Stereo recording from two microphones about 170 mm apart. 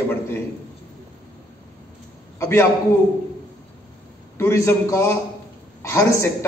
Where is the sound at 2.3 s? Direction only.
15° left (ahead or behind).